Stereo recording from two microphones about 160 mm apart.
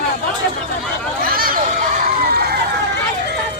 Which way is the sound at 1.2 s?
65° right (ahead or behind).